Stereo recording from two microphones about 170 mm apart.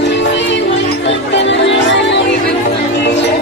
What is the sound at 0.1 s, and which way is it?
Music, 90° left.